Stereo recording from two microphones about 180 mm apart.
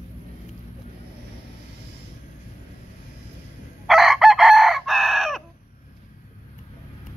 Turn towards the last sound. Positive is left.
turn(degrees=0)  # may be behind; listen again after turning